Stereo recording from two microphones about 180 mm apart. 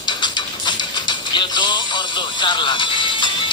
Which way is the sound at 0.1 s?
25° left (ahead or behind).